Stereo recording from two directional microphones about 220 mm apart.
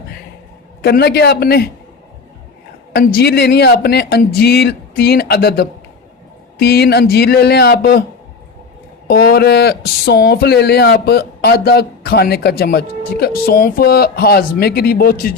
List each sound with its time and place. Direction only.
0.8 s speech: 45° left (ahead or behind)
2.9 s speech: 45° left (ahead or behind)
9.0 s speech: 45° left (ahead or behind)